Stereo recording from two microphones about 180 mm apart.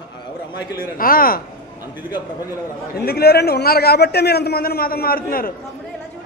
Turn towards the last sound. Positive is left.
turn(degrees=55)  # may be behind; listen again after turning